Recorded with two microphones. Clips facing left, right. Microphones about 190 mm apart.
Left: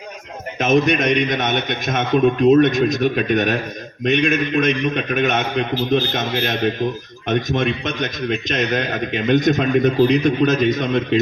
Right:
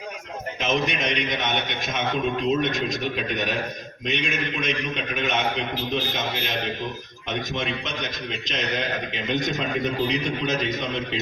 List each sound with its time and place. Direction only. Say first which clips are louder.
0.6 s a man's voice: left 9 dB; 50° left (ahead or behind)